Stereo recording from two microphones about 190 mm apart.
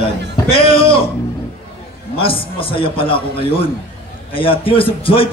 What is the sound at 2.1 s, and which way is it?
A man's voice, 30° left (ahead or behind).